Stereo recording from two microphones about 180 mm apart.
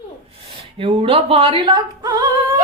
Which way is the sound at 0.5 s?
35° right (ahead or behind).